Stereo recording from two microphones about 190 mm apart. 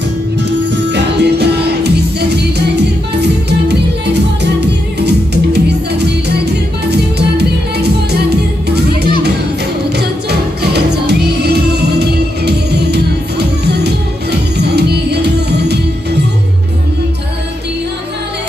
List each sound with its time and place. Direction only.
0.7 s music: 60° right (ahead or behind)
10.6 s music: 60° right (ahead or behind)
14.8 s music: 60° right (ahead or behind)